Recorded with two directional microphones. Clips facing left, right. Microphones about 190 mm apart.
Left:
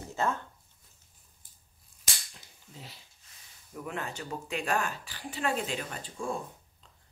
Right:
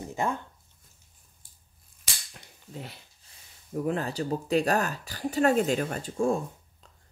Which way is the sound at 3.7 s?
35° right (ahead or behind).